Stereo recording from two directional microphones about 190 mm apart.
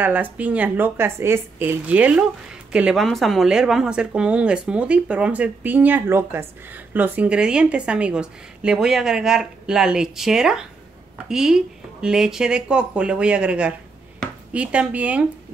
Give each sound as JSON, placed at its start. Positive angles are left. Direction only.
{"t": 0.0, "sound": "speech", "side_deg": -10}